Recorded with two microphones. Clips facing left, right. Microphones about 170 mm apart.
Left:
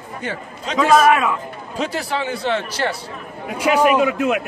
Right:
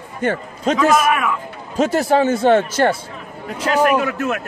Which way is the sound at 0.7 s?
25° left (ahead or behind).